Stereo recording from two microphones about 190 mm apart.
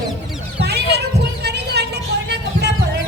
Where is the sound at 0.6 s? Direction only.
60° right (ahead or behind).